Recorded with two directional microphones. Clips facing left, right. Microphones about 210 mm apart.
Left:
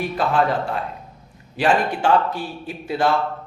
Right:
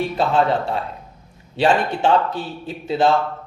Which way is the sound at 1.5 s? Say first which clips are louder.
Right 1 dB; 25° right (ahead or behind).